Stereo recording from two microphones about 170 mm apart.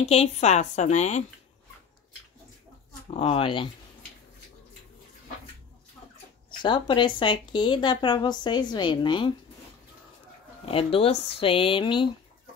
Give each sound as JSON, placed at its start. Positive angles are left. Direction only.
{"t": 0.0, "sound": "speech", "side_deg": 40}
{"t": 3.1, "sound": "speech", "side_deg": 35}
{"t": 6.6, "sound": "speech", "side_deg": 30}
{"t": 10.6, "sound": "speech", "side_deg": 35}